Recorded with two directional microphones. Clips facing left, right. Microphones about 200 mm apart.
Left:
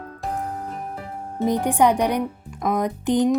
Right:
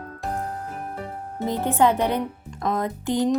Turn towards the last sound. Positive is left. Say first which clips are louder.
# left 3 dB
turn(degrees=15)  # may be behind; listen again after turning